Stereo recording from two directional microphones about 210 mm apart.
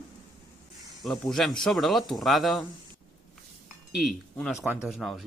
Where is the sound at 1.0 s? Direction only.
Centre (ahead or behind).